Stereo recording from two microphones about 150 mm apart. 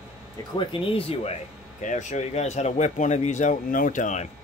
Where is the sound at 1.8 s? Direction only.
55° left (ahead or behind).